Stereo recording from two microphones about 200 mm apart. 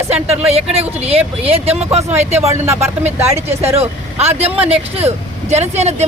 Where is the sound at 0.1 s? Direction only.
30° right (ahead or behind).